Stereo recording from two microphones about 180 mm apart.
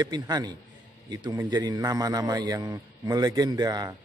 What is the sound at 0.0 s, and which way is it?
A man's voice, 20° right (ahead or behind).